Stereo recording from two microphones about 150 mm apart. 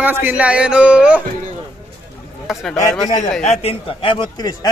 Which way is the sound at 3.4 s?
45° left (ahead or behind).